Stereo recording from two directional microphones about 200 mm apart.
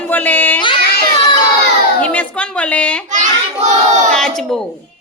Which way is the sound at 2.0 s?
5° left (ahead or behind).